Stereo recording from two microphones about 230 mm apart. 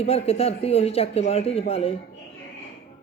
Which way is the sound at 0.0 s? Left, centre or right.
Left.